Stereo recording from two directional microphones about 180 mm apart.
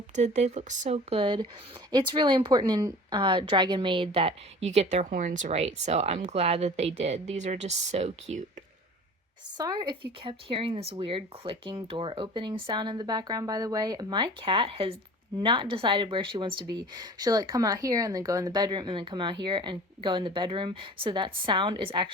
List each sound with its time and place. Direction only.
0.2 s speech: 40° right (ahead or behind)
9.6 s speech: 25° right (ahead or behind)